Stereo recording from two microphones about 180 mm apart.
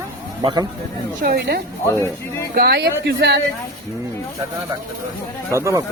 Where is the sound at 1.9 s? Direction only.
15° left (ahead or behind).